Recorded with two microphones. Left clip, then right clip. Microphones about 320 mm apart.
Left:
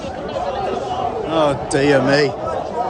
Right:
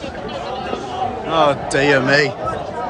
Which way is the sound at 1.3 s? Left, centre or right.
Centre.